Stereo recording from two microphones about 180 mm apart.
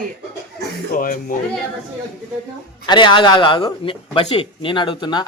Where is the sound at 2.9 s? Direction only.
25° left (ahead or behind).